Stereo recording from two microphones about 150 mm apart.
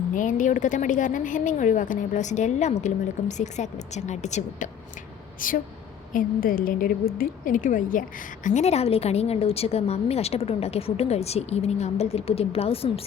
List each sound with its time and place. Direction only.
0.1 s a woman's voice: 60° left (ahead or behind)
5.4 s a woman's voice: 65° left (ahead or behind)
8.4 s a woman's voice: 50° left (ahead or behind)